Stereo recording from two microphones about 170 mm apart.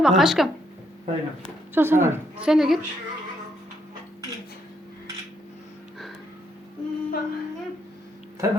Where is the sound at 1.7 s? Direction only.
15° right (ahead or behind).